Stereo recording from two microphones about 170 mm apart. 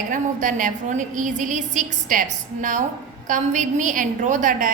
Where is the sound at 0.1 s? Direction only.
50° right (ahead or behind).